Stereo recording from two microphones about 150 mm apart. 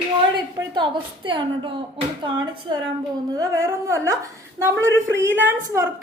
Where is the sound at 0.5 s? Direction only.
30° right (ahead or behind).